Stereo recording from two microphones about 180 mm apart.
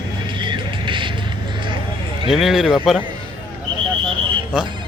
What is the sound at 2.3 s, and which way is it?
Speech, centre (ahead or behind).